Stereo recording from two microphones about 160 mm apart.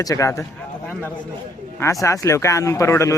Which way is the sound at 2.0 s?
20° left (ahead or behind).